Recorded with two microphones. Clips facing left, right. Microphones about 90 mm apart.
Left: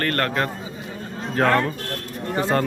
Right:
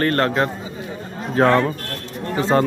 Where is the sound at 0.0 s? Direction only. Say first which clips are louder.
Right 4 dB; 15° right (ahead or behind).